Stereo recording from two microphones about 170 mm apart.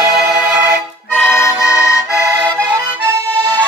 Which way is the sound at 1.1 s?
15° left (ahead or behind).